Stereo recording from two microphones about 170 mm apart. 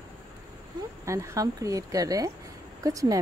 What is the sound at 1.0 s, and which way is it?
Speech, 15° right (ahead or behind).